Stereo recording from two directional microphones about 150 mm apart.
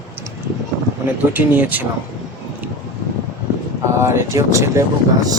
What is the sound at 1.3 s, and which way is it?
Speech, 10° right (ahead or behind).